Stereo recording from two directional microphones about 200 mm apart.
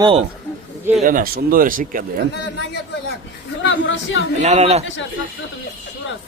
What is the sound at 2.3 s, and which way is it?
Speech, 55° left (ahead or behind).